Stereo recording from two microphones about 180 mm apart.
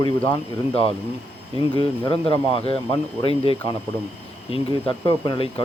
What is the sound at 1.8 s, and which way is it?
Speech, 30° left (ahead or behind).